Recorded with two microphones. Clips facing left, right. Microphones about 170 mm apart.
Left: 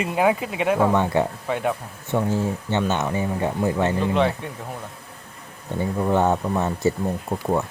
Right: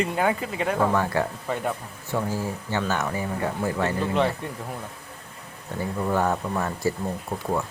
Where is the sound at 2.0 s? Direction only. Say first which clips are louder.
Left 5 dB; 20° left (ahead or behind).